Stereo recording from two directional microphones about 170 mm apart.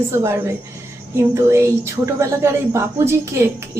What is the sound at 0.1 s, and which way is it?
Speech, 15° right (ahead or behind).